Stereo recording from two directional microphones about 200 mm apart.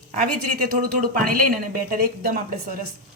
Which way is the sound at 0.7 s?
45° right (ahead or behind).